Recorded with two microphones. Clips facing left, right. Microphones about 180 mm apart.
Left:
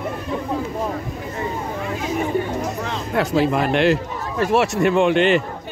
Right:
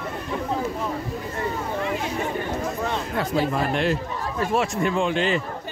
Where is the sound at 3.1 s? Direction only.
75° left (ahead or behind).